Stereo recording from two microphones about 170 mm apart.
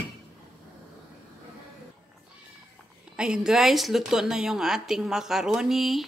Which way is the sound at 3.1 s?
5° right (ahead or behind).